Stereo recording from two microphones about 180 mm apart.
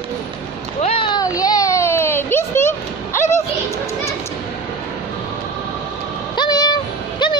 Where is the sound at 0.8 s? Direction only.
30° left (ahead or behind).